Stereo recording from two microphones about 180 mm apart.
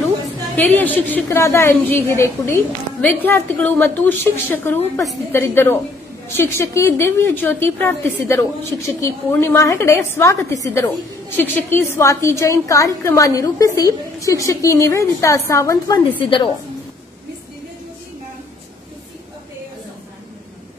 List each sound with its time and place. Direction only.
0.6 s a woman's voice: 10° left (ahead or behind)
16.2 s a woman's voice: 25° left (ahead or behind)